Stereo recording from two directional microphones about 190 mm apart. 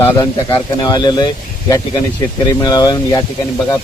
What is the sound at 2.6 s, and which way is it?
Speech, 20° left (ahead or behind).